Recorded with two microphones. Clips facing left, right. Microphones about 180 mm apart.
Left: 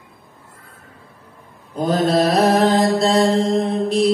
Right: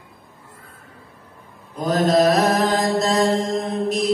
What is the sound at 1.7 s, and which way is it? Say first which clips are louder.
Mantra: left 1 dB; 30° left (ahead or behind).